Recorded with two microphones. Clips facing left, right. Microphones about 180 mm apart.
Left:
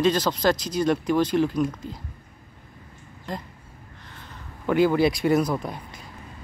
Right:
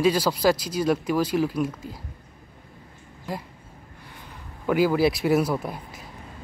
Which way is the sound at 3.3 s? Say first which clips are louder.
Right 1 dB; 10° right (ahead or behind).